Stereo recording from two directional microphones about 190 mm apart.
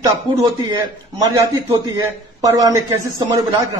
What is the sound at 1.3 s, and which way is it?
A man's voice, 20° right (ahead or behind).